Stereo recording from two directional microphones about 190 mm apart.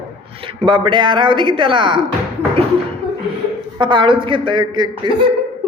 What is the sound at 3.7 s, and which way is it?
A woman's voice, 25° right (ahead or behind).